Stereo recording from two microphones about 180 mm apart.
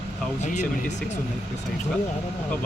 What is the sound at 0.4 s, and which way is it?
Speech, 40° left (ahead or behind).